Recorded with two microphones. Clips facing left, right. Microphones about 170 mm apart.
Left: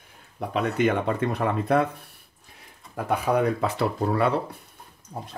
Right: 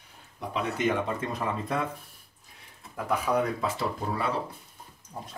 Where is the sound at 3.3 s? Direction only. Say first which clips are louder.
Left 4 dB; 50° left (ahead or behind).